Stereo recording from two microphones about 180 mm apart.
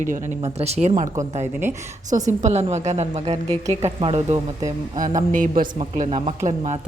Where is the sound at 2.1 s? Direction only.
40° right (ahead or behind).